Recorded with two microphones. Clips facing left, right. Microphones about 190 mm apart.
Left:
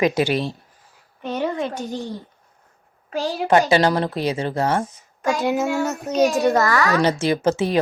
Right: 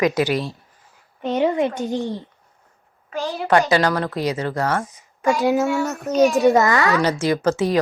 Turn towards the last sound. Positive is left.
turn(degrees=20)  # may be behind; listen again after turning